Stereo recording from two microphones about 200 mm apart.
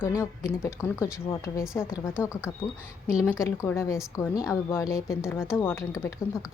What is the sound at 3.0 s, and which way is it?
A woman's voice, 15° left (ahead or behind).